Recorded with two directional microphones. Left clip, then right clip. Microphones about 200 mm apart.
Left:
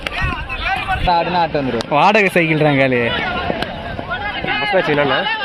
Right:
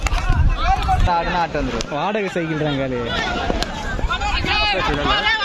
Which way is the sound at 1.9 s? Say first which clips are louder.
Left 11 dB; centre (ahead or behind).